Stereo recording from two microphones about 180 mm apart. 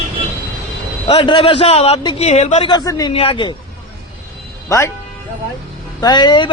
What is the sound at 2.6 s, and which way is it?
Speech, 20° left (ahead or behind).